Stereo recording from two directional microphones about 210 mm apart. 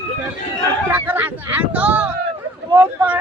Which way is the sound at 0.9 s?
10° right (ahead or behind).